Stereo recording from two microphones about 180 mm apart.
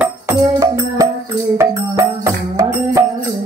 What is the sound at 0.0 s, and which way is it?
Music, 15° right (ahead or behind).